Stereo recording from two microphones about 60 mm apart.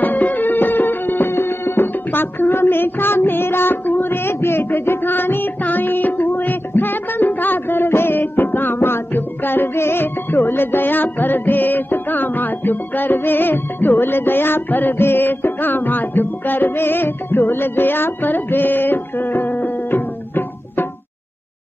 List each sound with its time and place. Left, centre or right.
0.0 s music: left